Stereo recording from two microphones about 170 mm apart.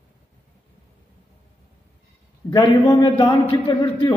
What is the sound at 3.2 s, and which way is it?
Speech, 25° left (ahead or behind).